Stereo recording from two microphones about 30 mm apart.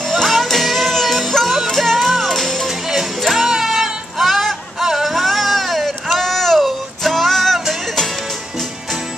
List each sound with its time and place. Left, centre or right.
0.1 s music: centre
3.3 s music: centre
3.6 s a sound: centre
4.8 s music: centre
5.1 s a sound: centre
6.6 s music: centre